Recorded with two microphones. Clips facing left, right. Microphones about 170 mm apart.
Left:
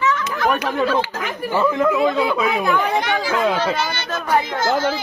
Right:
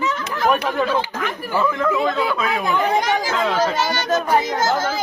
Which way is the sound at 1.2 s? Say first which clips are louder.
Left 2 dB; 5° left (ahead or behind).